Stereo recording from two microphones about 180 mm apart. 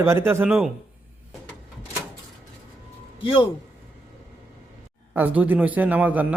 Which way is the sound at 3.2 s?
30° left (ahead or behind).